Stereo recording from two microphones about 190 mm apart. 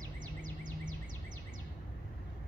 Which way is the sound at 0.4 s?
45° right (ahead or behind).